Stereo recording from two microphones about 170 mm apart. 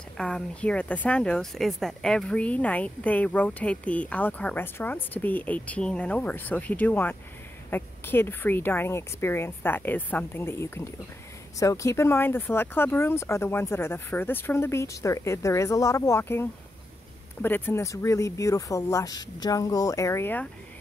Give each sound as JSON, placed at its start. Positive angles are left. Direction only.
{"t": 0.2, "sound": "speech", "side_deg": 5}